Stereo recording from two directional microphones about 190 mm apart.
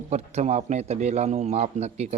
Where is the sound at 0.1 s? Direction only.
35° right (ahead or behind).